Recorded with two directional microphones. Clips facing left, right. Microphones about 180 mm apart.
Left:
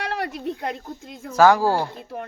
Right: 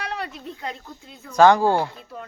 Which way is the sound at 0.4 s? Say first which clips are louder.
Left 6 dB; 55° left (ahead or behind).